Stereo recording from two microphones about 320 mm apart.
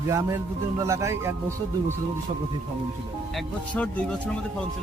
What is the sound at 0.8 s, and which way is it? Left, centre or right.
Speech, centre.